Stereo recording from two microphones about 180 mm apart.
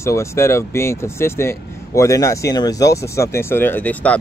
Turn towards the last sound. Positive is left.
turn(degrees=10)  # may be behind; listen again after turning